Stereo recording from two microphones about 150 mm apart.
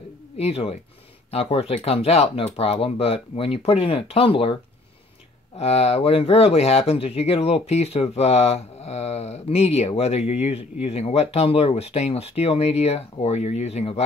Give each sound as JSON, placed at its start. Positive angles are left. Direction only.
{"t": 0.4, "sound": "speech", "side_deg": 40}
{"t": 5.6, "sound": "speech", "side_deg": 45}